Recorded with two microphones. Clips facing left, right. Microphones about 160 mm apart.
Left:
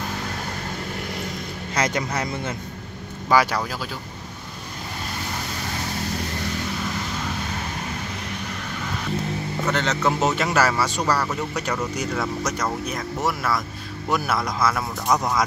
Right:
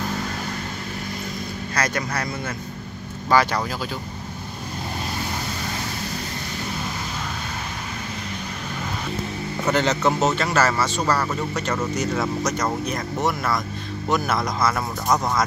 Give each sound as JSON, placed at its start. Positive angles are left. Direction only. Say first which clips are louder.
{"t": 1.8, "sound": "speech", "louder": "left 2 dB", "side_deg": 20}
{"t": 3.3, "sound": "speech", "louder": "even", "side_deg": 10}
{"t": 9.7, "sound": "speech", "louder": "right 3 dB", "side_deg": -5}
{"t": 10.3, "sound": "speech", "louder": "even", "side_deg": 15}
{"t": 11.1, "sound": "speech", "louder": "right 1 dB", "side_deg": 0}
{"t": 12.8, "sound": "speech", "louder": "right 2 dB", "side_deg": 5}